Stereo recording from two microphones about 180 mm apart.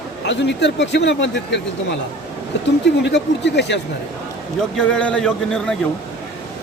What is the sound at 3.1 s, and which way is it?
Speech, 70° left (ahead or behind).